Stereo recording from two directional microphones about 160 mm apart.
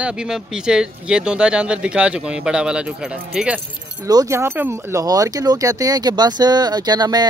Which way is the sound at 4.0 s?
20° right (ahead or behind).